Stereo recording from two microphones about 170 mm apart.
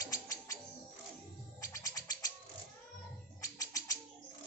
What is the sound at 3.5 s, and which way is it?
Bird, 20° left (ahead or behind).